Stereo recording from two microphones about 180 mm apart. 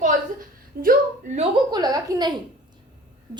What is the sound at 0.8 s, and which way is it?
Speech, 55° right (ahead or behind).